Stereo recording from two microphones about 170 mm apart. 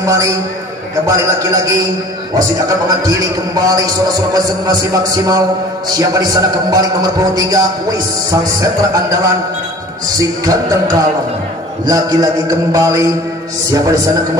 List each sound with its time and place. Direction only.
0.0 s a man's voice: 20° right (ahead or behind)